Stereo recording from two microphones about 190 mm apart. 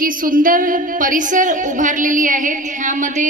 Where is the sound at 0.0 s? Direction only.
45° right (ahead or behind).